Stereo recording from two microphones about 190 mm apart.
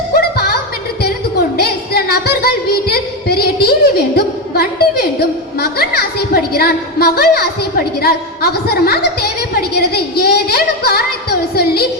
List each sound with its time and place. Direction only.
0.2 s music: 55° left (ahead or behind)
1.5 s a sound: 55° left (ahead or behind)
5.5 s a woman's voice: 55° left (ahead or behind)